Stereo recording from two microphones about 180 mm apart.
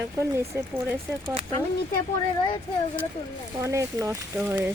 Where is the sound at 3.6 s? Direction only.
15° right (ahead or behind).